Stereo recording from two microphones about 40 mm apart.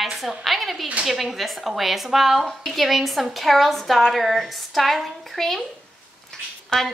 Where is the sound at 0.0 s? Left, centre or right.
Centre.